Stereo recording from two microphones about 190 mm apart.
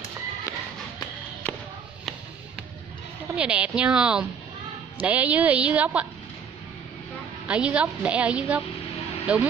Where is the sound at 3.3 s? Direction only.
5° right (ahead or behind).